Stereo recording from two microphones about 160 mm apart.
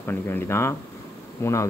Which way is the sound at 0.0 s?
15° left (ahead or behind).